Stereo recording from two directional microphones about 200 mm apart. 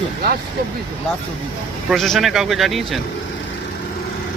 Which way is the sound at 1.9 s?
Centre (ahead or behind).